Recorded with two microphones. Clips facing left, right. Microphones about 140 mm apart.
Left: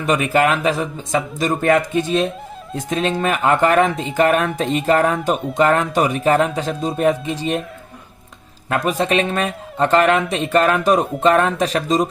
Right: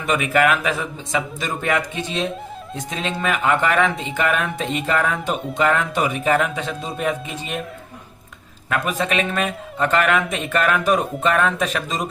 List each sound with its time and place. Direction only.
0.0 s speech: 40° left (ahead or behind)
8.7 s speech: 35° left (ahead or behind)